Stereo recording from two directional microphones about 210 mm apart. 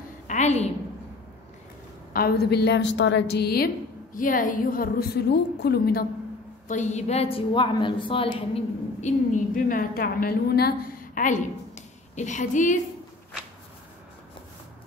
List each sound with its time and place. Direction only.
0.3 s a sound: 30° left (ahead or behind)
2.1 s a woman's voice: 50° left (ahead or behind)
6.7 s a woman's voice: 35° left (ahead or behind)
8.3 s a woman's voice: 35° left (ahead or behind)
11.1 s a woman's voice: 35° left (ahead or behind)